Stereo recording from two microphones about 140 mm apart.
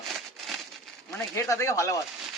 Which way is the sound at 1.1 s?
25° left (ahead or behind).